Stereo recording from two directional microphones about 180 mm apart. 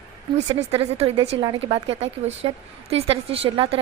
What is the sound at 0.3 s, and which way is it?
A woman's voice, 35° right (ahead or behind).